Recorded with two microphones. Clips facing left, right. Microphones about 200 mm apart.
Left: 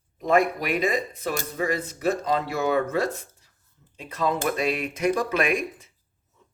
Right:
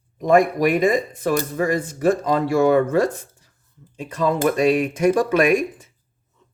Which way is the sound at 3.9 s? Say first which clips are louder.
Right 5 dB; 50° right (ahead or behind).